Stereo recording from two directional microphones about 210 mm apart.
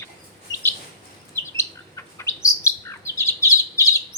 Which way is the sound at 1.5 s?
15° left (ahead or behind).